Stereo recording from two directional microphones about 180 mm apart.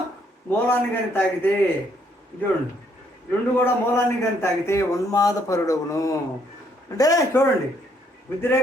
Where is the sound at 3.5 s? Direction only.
15° left (ahead or behind).